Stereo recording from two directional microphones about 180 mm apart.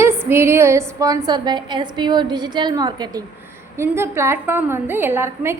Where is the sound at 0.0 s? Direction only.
10° right (ahead or behind).